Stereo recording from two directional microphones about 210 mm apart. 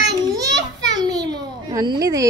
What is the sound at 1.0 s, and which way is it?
A child's voice, 20° right (ahead or behind).